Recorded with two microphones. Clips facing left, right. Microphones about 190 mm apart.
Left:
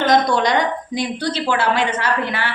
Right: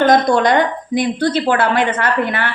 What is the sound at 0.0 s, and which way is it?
A woman's voice, 50° right (ahead or behind).